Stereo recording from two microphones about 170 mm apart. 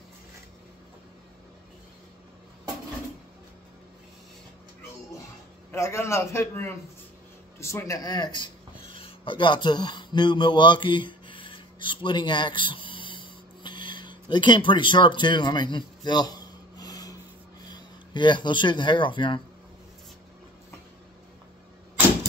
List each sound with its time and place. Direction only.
5.7 s a man's voice: 15° left (ahead or behind)
8.9 s a sound: 30° left (ahead or behind)
17.6 s speech: 25° left (ahead or behind)